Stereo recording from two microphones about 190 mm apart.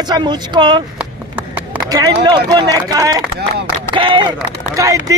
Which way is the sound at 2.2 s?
25° right (ahead or behind).